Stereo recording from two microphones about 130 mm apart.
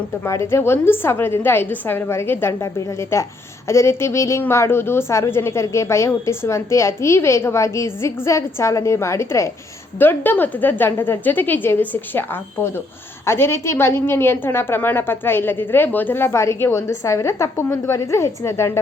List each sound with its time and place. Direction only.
0.3 s a woman's voice: 20° left (ahead or behind)